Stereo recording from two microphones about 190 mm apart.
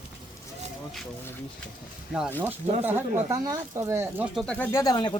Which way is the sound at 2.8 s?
15° right (ahead or behind).